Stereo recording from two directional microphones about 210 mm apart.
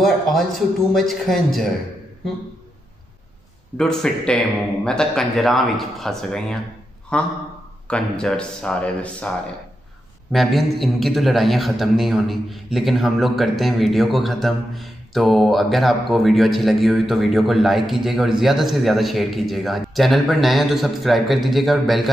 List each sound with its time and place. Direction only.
0.0 s a man's voice: centre (ahead or behind)
3.7 s a man's voice: 5° left (ahead or behind)
10.3 s a man's voice: centre (ahead or behind)